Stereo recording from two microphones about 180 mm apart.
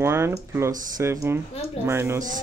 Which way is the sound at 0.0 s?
15° right (ahead or behind).